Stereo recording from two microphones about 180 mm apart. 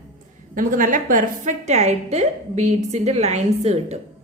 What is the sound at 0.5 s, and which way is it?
A woman's voice, 50° right (ahead or behind).